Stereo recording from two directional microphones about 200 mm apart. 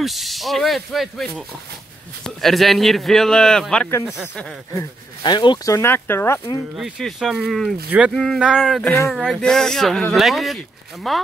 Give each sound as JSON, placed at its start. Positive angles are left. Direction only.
{"t": 0.0, "sound": "speech", "side_deg": 0}
{"t": 5.2, "sound": "speech", "side_deg": 25}
{"t": 5.8, "sound": "speech", "side_deg": 10}
{"t": 6.8, "sound": "speech", "side_deg": 0}